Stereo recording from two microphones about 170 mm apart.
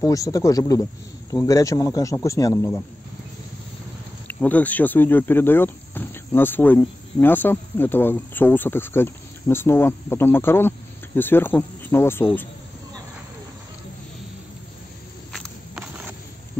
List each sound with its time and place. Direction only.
0.0 s speech: 20° left (ahead or behind)
4.3 s speech: 10° left (ahead or behind)
15.3 s walk: centre (ahead or behind)